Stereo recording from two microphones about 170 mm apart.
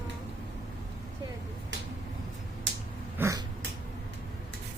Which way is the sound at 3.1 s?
15° right (ahead or behind).